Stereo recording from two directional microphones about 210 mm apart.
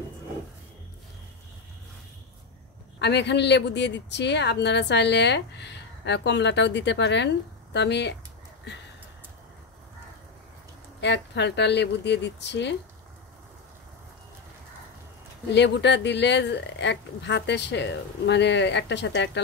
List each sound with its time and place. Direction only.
3.0 s a woman's voice: 55° left (ahead or behind)
11.0 s a woman's voice: 55° left (ahead or behind)
15.5 s a woman's voice: 55° left (ahead or behind)